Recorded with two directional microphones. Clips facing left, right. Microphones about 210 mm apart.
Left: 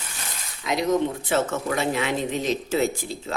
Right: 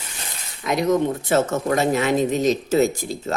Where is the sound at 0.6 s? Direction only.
50° right (ahead or behind).